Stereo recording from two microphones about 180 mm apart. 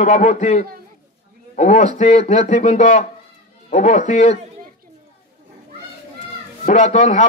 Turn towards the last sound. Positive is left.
turn(degrees=40)  # may be behind; listen again after turning